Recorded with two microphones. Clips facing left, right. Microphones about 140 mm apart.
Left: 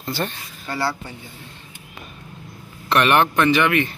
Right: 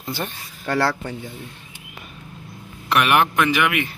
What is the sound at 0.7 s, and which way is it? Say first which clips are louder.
Speech: right 4 dB; 90° right.